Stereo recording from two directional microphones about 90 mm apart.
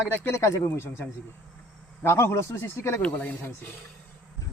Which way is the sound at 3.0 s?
15° left (ahead or behind).